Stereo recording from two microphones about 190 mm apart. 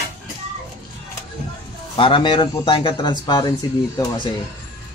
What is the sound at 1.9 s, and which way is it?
Speech, 25° left (ahead or behind).